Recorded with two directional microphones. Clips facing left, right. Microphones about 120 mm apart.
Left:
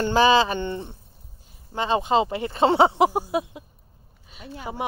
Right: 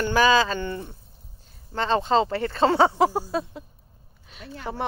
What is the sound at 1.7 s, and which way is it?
Speech, 15° left (ahead or behind).